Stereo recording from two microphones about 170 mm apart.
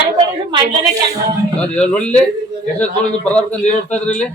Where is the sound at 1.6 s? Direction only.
5° left (ahead or behind).